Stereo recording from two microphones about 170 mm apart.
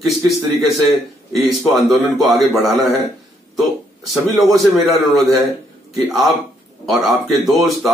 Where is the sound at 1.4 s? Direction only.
Centre (ahead or behind).